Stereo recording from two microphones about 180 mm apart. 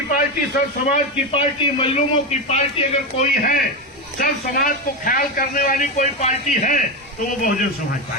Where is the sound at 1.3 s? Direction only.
30° left (ahead or behind).